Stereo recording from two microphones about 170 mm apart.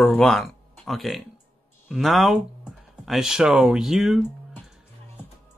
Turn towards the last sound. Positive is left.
turn(degrees=-5)  # may be behind; listen again after turning